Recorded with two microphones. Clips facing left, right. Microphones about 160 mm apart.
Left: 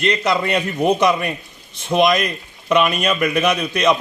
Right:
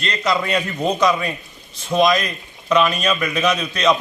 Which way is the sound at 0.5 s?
20° left (ahead or behind).